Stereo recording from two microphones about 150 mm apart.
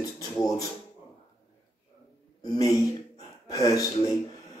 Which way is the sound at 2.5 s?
25° left (ahead or behind).